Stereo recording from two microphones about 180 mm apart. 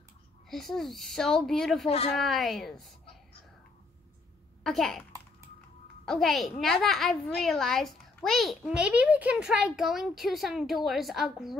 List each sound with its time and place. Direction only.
0.5 s a child's voice: centre (ahead or behind)
1.9 s speech: 35° left (ahead or behind)
2.1 s a child's voice: centre (ahead or behind)
4.6 s a child's voice: centre (ahead or behind)
6.0 s a child's voice: centre (ahead or behind)